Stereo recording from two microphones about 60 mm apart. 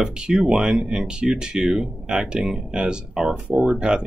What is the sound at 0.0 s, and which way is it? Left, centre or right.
Speech, centre.